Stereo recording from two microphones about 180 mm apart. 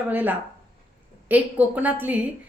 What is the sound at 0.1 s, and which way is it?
A woman's voice, 10° right (ahead or behind).